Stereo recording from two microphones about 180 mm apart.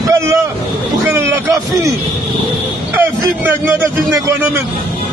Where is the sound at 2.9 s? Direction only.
10° right (ahead or behind).